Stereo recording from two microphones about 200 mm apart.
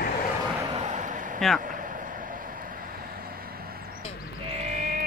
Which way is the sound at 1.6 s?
40° right (ahead or behind).